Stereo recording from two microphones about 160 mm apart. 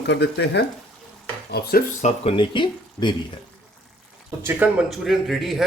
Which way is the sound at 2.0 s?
45° left (ahead or behind).